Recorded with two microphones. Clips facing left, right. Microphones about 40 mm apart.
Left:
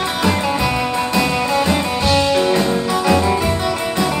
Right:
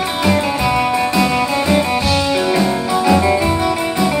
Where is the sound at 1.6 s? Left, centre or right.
Right.